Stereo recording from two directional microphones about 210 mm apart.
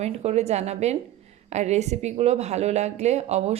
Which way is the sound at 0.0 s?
30° right (ahead or behind).